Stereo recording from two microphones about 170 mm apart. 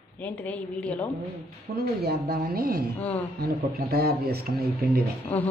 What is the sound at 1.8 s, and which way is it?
Speech, 60° right (ahead or behind).